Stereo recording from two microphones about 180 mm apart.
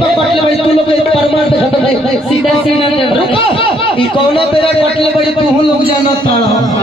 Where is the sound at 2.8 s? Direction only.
30° left (ahead or behind).